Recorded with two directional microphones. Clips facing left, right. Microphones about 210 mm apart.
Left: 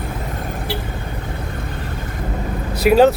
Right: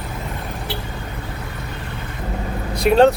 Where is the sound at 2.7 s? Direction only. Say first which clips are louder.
Left 1 dB; 5° left (ahead or behind).